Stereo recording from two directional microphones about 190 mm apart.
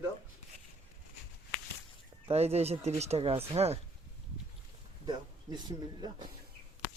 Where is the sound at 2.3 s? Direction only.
35° right (ahead or behind).